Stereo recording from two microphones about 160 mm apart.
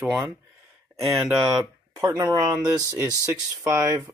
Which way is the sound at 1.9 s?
20° right (ahead or behind).